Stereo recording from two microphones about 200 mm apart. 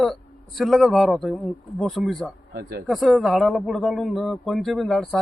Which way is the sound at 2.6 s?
50° right (ahead or behind).